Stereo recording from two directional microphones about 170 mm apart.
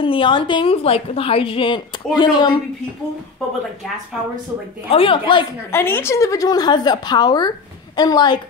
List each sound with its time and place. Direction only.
0.0 s a woman's voice: 30° left (ahead or behind)
4.9 s a woman's voice: 30° left (ahead or behind)
5.7 s a woman's voice: 15° left (ahead or behind)